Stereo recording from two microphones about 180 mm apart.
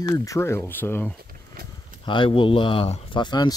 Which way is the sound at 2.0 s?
30° left (ahead or behind).